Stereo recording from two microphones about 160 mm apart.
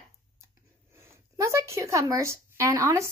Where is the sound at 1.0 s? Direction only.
20° right (ahead or behind).